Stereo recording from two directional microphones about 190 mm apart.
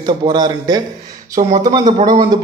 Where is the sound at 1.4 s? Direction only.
40° right (ahead or behind).